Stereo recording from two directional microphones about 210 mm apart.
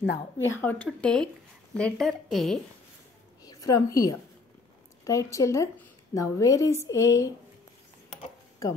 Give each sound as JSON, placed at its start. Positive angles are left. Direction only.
{"t": 0.0, "sound": "speech", "side_deg": 60}
{"t": 0.6, "sound": "speech", "side_deg": 5}
{"t": 3.4, "sound": "a woman's voice", "side_deg": 15}